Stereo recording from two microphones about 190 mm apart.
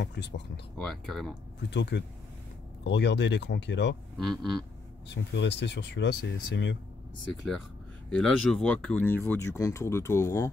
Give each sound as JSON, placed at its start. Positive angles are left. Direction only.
{"t": 0.0, "sound": "speech", "side_deg": 65}
{"t": 0.7, "sound": "speech", "side_deg": 0}
{"t": 1.7, "sound": "speech", "side_deg": 65}
{"t": 4.2, "sound": "speech", "side_deg": 5}
{"t": 5.1, "sound": "speech", "side_deg": 65}
{"t": 8.1, "sound": "speech", "side_deg": 5}